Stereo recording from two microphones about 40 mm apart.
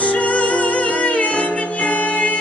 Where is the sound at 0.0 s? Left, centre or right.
Left.